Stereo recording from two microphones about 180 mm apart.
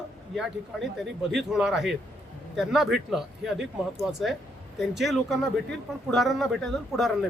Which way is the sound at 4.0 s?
Centre (ahead or behind).